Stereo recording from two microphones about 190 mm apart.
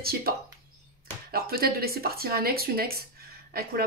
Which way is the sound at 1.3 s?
55° right (ahead or behind).